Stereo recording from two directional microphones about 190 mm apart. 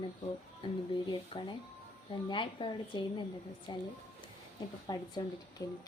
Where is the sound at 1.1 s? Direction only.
25° left (ahead or behind).